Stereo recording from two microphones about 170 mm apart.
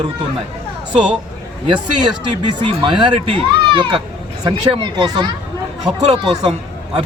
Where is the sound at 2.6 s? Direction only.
30° right (ahead or behind).